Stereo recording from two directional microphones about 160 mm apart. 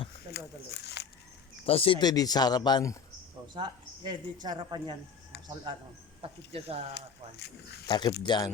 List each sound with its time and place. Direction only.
0.3 s a sound: 90° left
1.6 s speech: 35° left (ahead or behind)
3.5 s speech: 30° right (ahead or behind)
6.9 s speech: 90° left
7.9 s speech: 30° left (ahead or behind)